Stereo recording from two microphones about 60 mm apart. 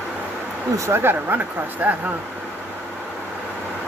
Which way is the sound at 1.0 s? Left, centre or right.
Right.